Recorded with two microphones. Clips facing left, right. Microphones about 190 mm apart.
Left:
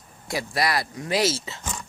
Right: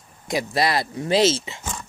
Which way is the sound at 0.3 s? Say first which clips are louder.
Right 3 dB; 20° right (ahead or behind).